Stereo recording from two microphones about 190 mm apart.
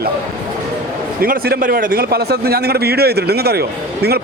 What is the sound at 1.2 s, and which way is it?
A man's voice, 50° right (ahead or behind).